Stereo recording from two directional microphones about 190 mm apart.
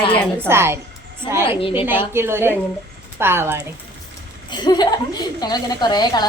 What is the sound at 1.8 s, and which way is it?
A woman's voice, 10° right (ahead or behind).